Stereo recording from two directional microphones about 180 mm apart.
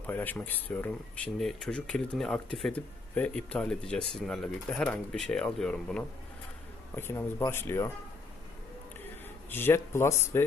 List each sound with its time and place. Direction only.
0.1 s speech: 10° left (ahead or behind)
9.5 s speech: 10° left (ahead or behind)